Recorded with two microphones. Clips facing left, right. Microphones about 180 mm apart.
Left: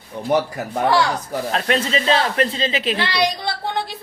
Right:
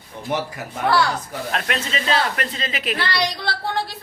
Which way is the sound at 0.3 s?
40° left (ahead or behind).